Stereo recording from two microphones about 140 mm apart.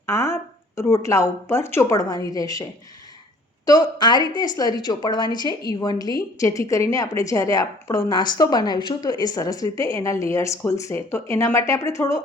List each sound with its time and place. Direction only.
0.0 s a sound: 20° left (ahead or behind)
0.8 s a woman's voice: 20° left (ahead or behind)
3.7 s a woman's voice: 30° left (ahead or behind)